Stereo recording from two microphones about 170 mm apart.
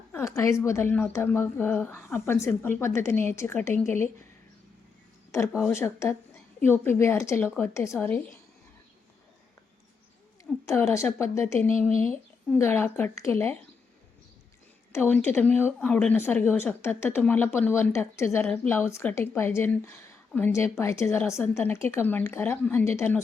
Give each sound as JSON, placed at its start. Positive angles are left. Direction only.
{"t": 0.1, "sound": "speech", "side_deg": 15}
{"t": 5.7, "sound": "speech", "side_deg": 15}
{"t": 10.7, "sound": "speech", "side_deg": 15}
{"t": 11.9, "sound": "speech", "side_deg": -35}
{"t": 12.5, "sound": "speech", "side_deg": 15}
{"t": 14.9, "sound": "speech", "side_deg": 15}